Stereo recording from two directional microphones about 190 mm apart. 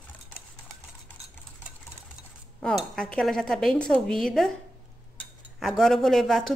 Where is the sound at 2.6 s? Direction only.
5° left (ahead or behind).